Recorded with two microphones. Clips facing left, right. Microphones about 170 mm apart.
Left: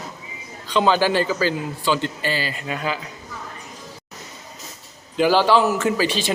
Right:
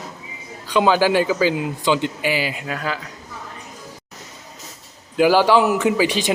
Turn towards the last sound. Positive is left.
turn(degrees=-15)  # may be behind; listen again after turning